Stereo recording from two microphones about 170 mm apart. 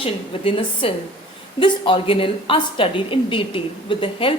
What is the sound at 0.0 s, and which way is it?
A woman's voice, 30° left (ahead or behind).